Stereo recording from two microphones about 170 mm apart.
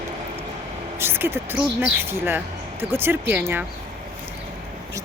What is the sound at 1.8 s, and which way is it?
A woman's voice, 15° right (ahead or behind).